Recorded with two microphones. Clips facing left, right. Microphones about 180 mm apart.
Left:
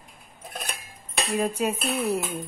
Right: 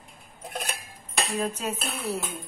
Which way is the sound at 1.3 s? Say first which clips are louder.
Left 6 dB; 10° left (ahead or behind).